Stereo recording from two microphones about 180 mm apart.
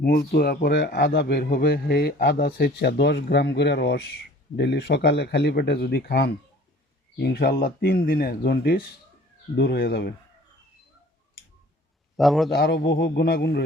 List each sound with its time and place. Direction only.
0.0 s a man's voice: 55° left (ahead or behind)
12.1 s a man's voice: centre (ahead or behind)
12.5 s a man's voice: 65° left (ahead or behind)